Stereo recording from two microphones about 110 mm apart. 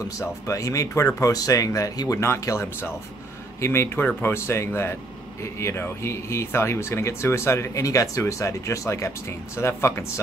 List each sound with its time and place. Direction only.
0.2 s speech: 30° left (ahead or behind)